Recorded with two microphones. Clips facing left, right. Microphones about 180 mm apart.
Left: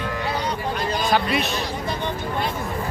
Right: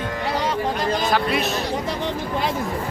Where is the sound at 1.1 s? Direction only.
Centre (ahead or behind).